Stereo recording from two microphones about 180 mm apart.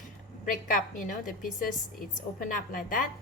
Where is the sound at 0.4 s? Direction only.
50° left (ahead or behind).